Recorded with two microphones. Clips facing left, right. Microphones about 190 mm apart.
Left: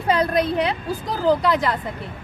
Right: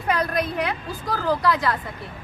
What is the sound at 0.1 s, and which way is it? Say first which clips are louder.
A woman's voice: left 4 dB; 25° left (ahead or behind).